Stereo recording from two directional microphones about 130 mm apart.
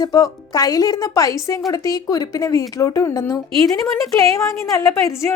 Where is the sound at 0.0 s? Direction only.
30° left (ahead or behind).